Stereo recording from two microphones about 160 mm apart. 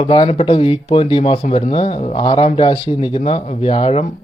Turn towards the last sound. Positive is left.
turn(degrees=35)  # may be behind; listen again after turning